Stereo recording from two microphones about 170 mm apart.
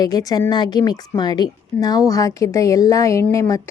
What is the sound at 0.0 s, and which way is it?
A woman's voice, 20° left (ahead or behind).